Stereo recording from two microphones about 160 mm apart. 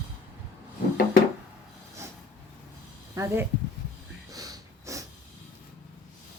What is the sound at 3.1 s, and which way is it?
Speech, 20° right (ahead or behind).